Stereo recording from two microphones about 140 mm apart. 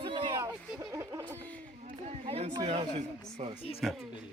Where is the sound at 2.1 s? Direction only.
45° right (ahead or behind).